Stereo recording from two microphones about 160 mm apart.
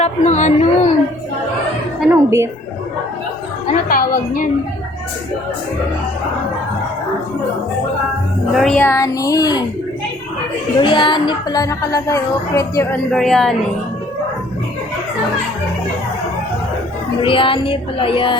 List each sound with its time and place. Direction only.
0.0 s speech: 45° left (ahead or behind)
2.0 s speech: 15° right (ahead or behind)
3.8 s a woman's voice: 65° left (ahead or behind)
8.5 s music: 5° left (ahead or behind)
8.9 s speech: 20° left (ahead or behind)
10.8 s speech: 30° left (ahead or behind)
13.1 s music: centre (ahead or behind)
17.2 s speech: 35° left (ahead or behind)